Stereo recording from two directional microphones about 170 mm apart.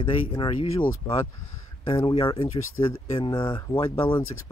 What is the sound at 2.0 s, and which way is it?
Speech, 30° left (ahead or behind).